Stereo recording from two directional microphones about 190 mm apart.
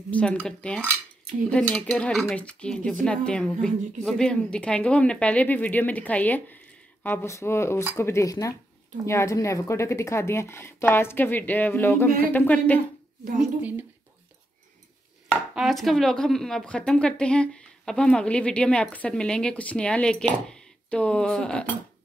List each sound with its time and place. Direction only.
0.1 s a woman's voice: 5° left (ahead or behind)
13.2 s a woman's voice: 45° right (ahead or behind)
13.6 s a woman's voice: 10° right (ahead or behind)
15.5 s a woman's voice: centre (ahead or behind)